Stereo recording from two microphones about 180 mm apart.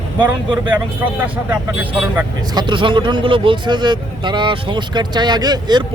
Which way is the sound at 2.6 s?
25° right (ahead or behind).